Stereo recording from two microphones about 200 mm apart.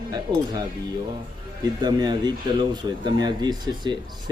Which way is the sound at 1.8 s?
20° right (ahead or behind).